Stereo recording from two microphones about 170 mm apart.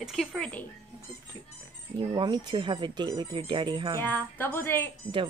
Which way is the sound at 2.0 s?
25° right (ahead or behind).